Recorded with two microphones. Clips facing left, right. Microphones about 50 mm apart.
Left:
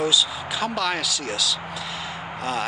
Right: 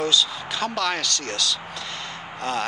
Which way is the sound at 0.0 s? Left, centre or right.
Centre.